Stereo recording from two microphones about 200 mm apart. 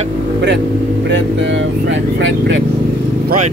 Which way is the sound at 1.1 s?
65° right (ahead or behind).